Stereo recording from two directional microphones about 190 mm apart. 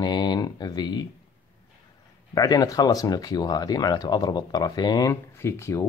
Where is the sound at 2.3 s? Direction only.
20° left (ahead or behind).